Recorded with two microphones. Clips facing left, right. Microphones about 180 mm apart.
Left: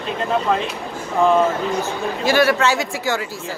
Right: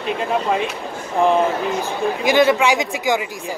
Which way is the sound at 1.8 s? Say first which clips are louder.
Right 2 dB; 15° right (ahead or behind).